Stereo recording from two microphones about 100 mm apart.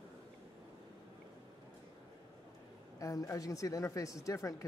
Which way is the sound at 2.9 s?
35° left (ahead or behind).